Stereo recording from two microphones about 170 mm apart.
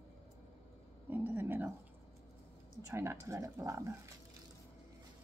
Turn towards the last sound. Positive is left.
turn(degrees=-15)  # may be behind; listen again after turning